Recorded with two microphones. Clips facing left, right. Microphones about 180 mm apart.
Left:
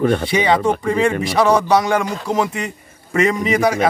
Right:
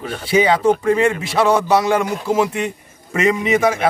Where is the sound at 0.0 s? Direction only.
55° left (ahead or behind).